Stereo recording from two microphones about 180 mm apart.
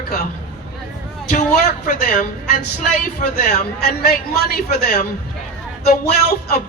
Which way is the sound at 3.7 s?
60° left (ahead or behind).